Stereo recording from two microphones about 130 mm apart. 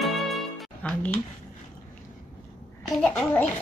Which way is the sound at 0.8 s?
10° left (ahead or behind).